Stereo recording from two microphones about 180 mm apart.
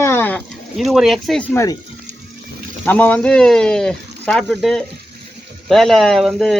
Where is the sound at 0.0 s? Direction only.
15° left (ahead or behind).